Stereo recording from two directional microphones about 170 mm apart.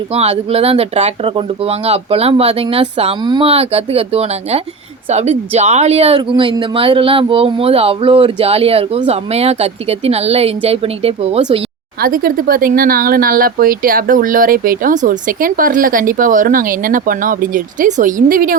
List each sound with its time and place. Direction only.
0.1 s speech: 35° right (ahead or behind)
11.9 s speech: 60° right (ahead or behind)